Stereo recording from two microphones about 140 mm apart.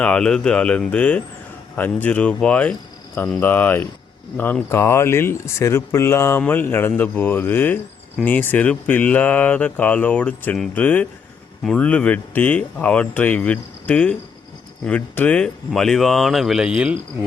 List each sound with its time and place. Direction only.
0.0 s speech: 5° left (ahead or behind)